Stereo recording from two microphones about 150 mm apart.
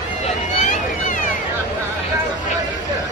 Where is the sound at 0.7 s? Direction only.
60° left (ahead or behind).